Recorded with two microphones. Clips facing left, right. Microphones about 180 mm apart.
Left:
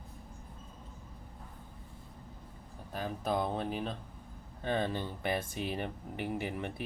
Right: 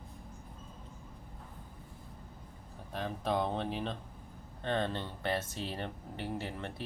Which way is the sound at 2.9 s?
5° left (ahead or behind).